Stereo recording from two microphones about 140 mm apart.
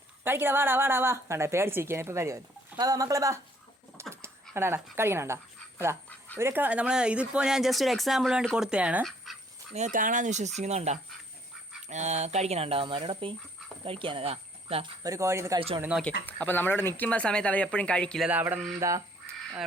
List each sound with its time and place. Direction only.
0.3 s a woman's voice: 15° right (ahead or behind)
4.0 s a sound: 20° right (ahead or behind)
4.5 s a woman's voice: 15° right (ahead or behind)
9.0 s dog: centre (ahead or behind)
9.7 s speech: 65° right (ahead or behind); by 14.8 s 45° right (ahead or behind)
15.0 s speech: 20° right (ahead or behind)
16.0 s speech: 10° left (ahead or behind)
18.3 s a woman's voice: 10° right (ahead or behind)
18.8 s speech: 25° right (ahead or behind)